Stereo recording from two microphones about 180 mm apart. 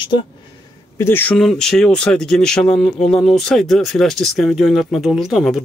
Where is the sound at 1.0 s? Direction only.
10° left (ahead or behind).